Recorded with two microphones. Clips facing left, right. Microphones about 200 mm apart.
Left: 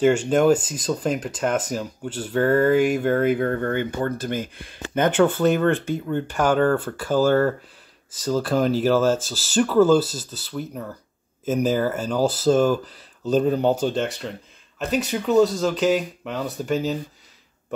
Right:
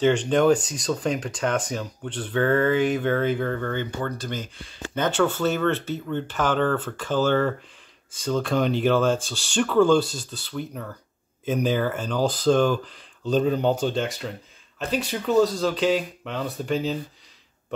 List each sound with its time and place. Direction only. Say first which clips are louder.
0.1 s speech: left 1 dB; 10° left (ahead or behind)
3.3 s speech: left 4 dB; 45° left (ahead or behind)
5.1 s speech: left 4 dB; 15° left (ahead or behind)